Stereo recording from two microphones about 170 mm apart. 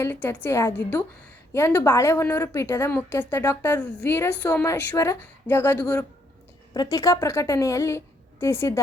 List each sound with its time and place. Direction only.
0.0 s a woman's voice: 15° left (ahead or behind)